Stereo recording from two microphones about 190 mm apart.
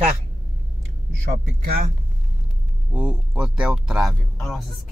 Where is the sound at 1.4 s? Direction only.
55° right (ahead or behind).